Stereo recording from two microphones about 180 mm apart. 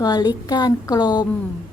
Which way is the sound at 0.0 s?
20° left (ahead or behind).